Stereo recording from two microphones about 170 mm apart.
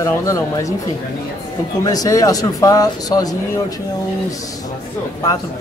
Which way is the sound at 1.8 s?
20° left (ahead or behind).